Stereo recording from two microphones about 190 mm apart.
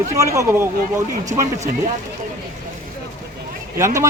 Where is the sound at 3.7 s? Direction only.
15° right (ahead or behind).